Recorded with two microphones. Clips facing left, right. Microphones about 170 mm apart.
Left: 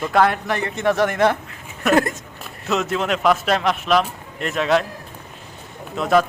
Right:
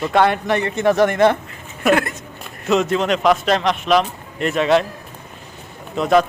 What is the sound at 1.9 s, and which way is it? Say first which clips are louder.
Speech: left 2 dB; 45° left (ahead or behind).